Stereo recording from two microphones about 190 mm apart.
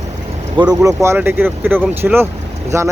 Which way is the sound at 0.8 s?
15° right (ahead or behind).